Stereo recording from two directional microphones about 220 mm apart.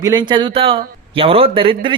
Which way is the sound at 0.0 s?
20° right (ahead or behind).